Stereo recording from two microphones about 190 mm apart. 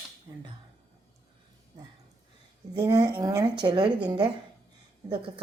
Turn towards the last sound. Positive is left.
turn(degrees=-25)  # may be behind; listen again after turning